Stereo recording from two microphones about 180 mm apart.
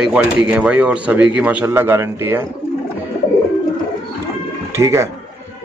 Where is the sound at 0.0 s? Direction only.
5° right (ahead or behind).